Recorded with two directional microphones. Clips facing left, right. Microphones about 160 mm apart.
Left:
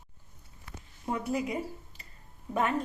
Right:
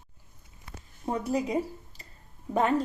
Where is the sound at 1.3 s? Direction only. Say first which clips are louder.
Right 5 dB; 30° right (ahead or behind).